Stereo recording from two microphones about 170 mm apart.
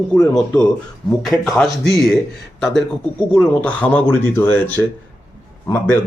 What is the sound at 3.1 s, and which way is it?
Speech, 10° left (ahead or behind).